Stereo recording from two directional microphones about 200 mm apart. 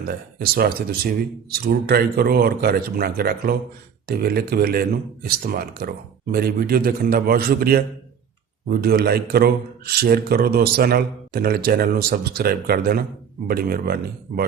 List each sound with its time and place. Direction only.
0.1 s a man's voice: 50° right (ahead or behind)